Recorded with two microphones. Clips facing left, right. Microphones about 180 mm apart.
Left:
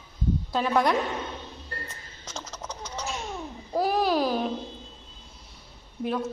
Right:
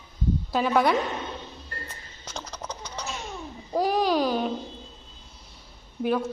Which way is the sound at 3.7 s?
5° left (ahead or behind).